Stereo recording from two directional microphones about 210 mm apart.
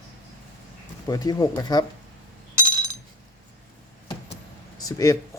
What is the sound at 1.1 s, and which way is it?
Speech, 20° left (ahead or behind).